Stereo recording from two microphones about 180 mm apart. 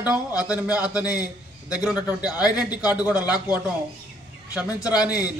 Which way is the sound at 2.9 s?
10° right (ahead or behind).